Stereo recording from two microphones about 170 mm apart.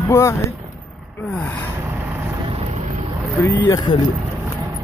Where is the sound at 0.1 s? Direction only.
15° left (ahead or behind).